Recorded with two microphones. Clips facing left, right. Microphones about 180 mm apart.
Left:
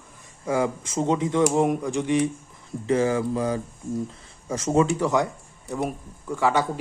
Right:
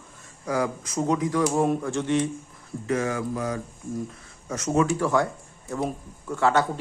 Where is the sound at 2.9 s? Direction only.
30° left (ahead or behind).